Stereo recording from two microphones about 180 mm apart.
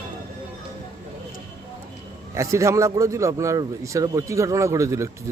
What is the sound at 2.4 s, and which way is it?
A man's voice, 15° right (ahead or behind).